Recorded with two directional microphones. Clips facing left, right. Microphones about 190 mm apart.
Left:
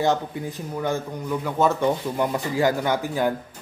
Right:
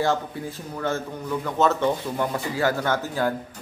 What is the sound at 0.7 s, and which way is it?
Speech, 15° left (ahead or behind).